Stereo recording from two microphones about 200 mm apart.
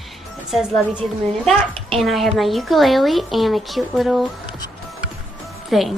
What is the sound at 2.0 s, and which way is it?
A woman's voice, centre (ahead or behind).